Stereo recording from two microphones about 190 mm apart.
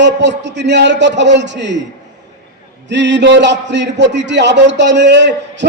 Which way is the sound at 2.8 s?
65° right (ahead or behind).